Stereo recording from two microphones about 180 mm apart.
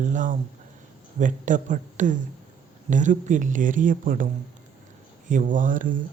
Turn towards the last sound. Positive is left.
turn(degrees=-50)  # may be behind; listen again after turning